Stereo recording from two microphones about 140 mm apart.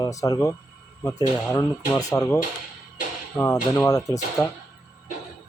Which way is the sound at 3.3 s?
20° left (ahead or behind).